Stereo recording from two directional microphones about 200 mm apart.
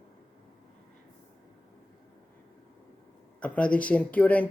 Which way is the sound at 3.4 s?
5° left (ahead or behind).